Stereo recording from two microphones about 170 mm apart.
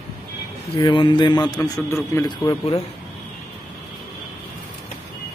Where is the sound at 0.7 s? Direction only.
30° left (ahead or behind).